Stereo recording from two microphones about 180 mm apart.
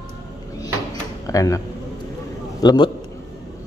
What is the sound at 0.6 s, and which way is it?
Drawer open or close, 20° left (ahead or behind).